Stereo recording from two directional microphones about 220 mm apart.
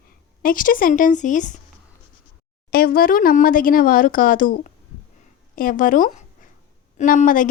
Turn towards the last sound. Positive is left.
turn(degrees=35)  # may be behind; listen again after turning